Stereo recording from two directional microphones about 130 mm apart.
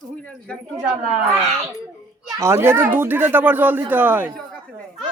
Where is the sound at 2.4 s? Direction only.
20° right (ahead or behind).